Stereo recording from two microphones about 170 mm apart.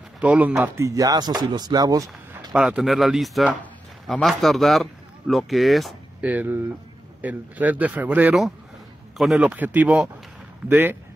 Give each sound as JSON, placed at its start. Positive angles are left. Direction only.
{"t": 0.2, "sound": "speech", "side_deg": -10}
{"t": 2.5, "sound": "speech", "side_deg": -5}
{"t": 6.3, "sound": "a man's voice", "side_deg": -10}